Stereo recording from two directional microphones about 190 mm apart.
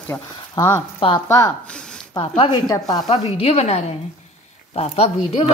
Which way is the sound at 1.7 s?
5° left (ahead or behind).